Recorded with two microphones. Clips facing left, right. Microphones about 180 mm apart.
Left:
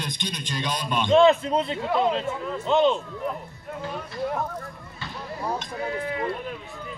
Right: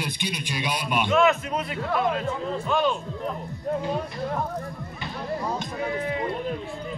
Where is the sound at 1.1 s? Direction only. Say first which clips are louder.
Left 5 dB; 30° left (ahead or behind).